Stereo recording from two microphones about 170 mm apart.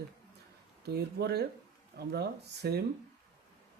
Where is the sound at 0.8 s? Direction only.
70° right (ahead or behind).